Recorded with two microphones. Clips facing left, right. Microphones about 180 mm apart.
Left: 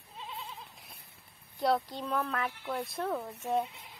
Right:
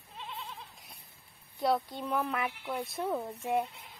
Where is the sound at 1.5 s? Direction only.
Centre (ahead or behind).